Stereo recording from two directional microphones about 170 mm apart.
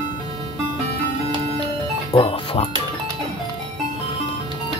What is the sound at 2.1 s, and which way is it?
Speech, 35° left (ahead or behind).